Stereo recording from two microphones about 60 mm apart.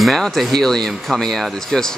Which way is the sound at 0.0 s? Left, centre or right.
Centre.